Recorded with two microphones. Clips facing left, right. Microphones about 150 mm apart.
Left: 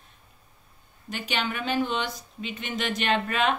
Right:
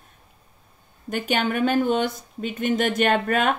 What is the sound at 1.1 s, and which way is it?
Speech, 50° right (ahead or behind).